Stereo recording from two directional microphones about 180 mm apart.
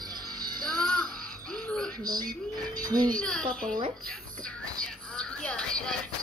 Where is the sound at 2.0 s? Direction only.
20° right (ahead or behind).